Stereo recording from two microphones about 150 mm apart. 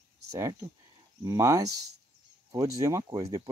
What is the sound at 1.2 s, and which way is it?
Speech, 20° right (ahead or behind).